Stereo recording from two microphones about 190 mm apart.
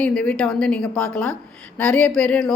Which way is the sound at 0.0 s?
5° left (ahead or behind).